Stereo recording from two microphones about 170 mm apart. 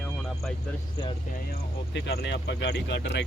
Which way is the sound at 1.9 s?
80° left.